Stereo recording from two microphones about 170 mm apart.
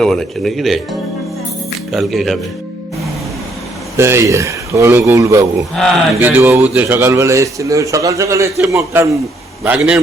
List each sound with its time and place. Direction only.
0.0 s speech: 5° left (ahead or behind)
1.9 s speech: centre (ahead or behind)
3.9 s a man's voice: 15° right (ahead or behind)